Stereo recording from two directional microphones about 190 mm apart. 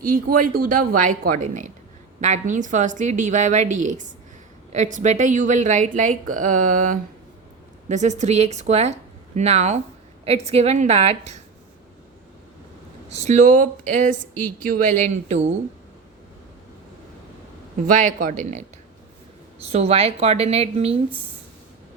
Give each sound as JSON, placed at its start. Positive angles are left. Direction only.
{"t": 0.0, "sound": "a woman's voice", "side_deg": -50}
{"t": 13.1, "sound": "speech", "side_deg": -35}
{"t": 17.8, "sound": "speech", "side_deg": -45}